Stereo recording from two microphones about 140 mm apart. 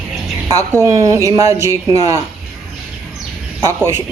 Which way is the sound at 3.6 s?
20° right (ahead or behind).